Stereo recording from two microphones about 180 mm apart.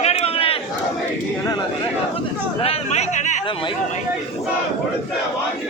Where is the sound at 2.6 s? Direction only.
35° left (ahead or behind).